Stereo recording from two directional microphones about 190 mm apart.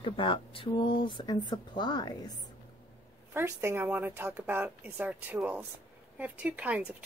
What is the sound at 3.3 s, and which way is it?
Speech, 15° right (ahead or behind).